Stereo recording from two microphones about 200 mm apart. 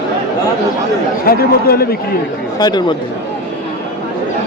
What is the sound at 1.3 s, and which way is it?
Speech, 50° left (ahead or behind).